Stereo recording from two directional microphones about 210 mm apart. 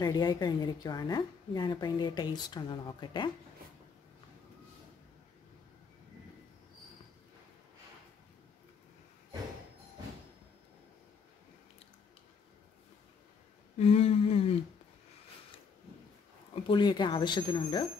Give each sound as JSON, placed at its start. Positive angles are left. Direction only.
{"t": 0.0, "sound": "speech", "side_deg": 20}
{"t": 13.7, "sound": "humming", "side_deg": 30}
{"t": 16.6, "sound": "speech", "side_deg": 20}